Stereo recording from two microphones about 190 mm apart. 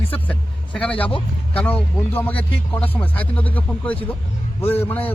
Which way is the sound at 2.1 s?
10° left (ahead or behind).